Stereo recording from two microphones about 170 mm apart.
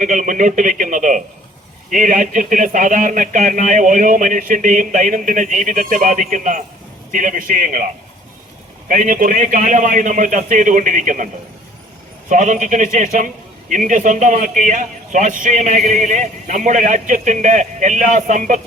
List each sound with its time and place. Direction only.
0.0 s a man's voice: 50° right (ahead or behind)
8.9 s a man's voice: 50° right (ahead or behind)
12.3 s a man's voice: 45° right (ahead or behind)